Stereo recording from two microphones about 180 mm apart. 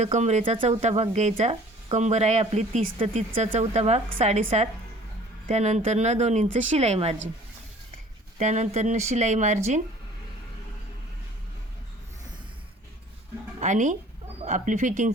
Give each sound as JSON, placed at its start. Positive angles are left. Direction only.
{"t": 0.0, "sound": "speech", "side_deg": -40}
{"t": 8.4, "sound": "speech", "side_deg": -40}
{"t": 13.6, "sound": "speech", "side_deg": -40}